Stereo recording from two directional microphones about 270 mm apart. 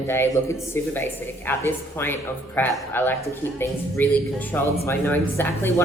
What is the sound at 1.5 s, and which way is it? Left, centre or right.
Speech, centre.